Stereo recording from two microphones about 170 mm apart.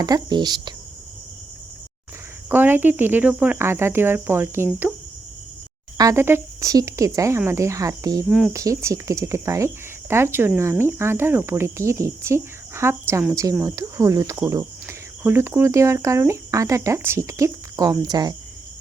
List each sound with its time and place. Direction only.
0.0 s speech: 25° right (ahead or behind)
2.5 s speech: 10° right (ahead or behind)
6.0 s speech: 15° right (ahead or behind)
8.3 s speech: centre (ahead or behind)
8.5 s speech: 20° right (ahead or behind)